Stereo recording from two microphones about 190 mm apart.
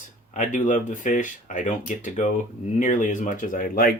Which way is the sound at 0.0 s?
40° left (ahead or behind).